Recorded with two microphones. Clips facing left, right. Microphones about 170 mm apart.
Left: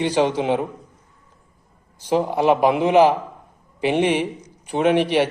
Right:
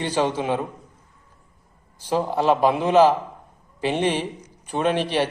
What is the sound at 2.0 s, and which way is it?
A man's voice, 15° left (ahead or behind).